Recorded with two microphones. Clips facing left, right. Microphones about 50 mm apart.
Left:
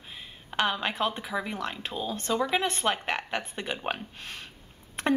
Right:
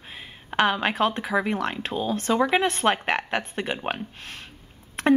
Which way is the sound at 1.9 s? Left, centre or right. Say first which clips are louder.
Right 6 dB; centre.